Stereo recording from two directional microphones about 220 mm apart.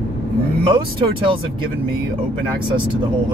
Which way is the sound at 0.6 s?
20° right (ahead or behind).